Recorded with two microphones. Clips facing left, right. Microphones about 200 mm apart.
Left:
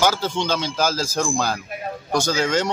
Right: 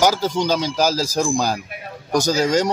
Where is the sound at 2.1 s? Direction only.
40° right (ahead or behind).